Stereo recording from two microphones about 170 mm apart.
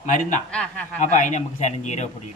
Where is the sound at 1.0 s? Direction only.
45° left (ahead or behind).